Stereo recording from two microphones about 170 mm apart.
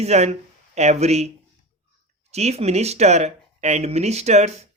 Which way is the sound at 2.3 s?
40° right (ahead or behind).